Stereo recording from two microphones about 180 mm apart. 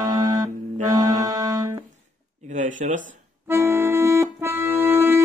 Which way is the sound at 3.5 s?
15° right (ahead or behind).